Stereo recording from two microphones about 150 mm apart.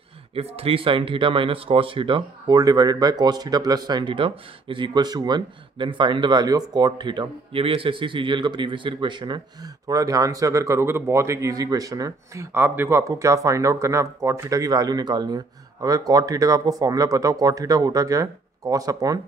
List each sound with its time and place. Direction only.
0.3 s speech: 45° right (ahead or behind); by 19.1 s 25° right (ahead or behind)